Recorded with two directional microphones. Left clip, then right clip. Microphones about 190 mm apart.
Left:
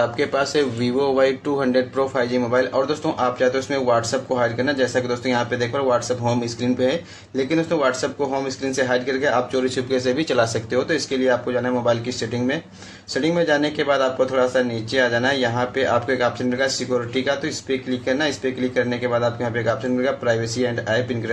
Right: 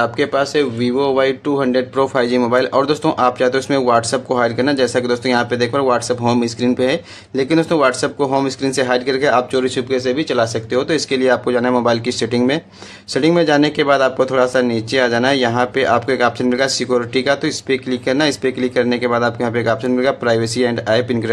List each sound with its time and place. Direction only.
0.0 s speech: 30° right (ahead or behind)